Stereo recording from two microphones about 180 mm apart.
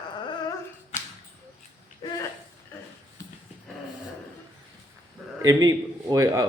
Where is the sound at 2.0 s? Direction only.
20° left (ahead or behind).